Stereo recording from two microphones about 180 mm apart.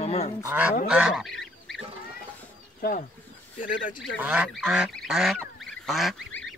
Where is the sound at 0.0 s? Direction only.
35° left (ahead or behind).